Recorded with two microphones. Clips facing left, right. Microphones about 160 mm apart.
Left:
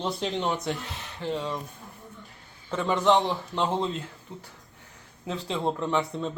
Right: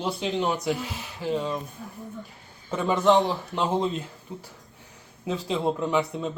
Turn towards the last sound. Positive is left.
turn(degrees=-5)  # may be behind; listen again after turning